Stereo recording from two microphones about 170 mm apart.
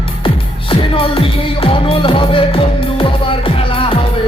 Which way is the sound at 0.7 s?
30° left (ahead or behind).